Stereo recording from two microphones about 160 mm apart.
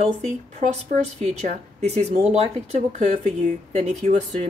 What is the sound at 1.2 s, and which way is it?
Speech, 45° right (ahead or behind).